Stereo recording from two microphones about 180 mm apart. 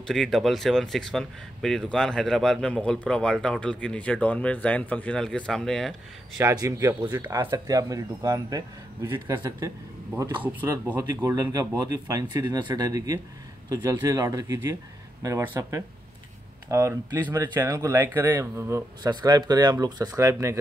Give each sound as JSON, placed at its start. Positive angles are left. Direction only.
{"t": 0.0, "sound": "speech", "side_deg": 0}
{"t": 6.4, "sound": "speech", "side_deg": -20}